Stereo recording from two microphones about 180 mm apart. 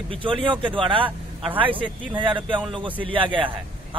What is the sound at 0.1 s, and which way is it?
Speech, 30° right (ahead or behind).